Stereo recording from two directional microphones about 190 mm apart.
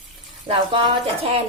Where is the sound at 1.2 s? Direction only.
30° right (ahead or behind).